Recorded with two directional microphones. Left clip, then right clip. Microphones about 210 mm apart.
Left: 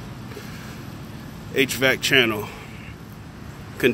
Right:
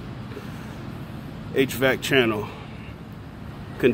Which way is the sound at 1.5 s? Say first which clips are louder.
Left 2 dB; centre (ahead or behind).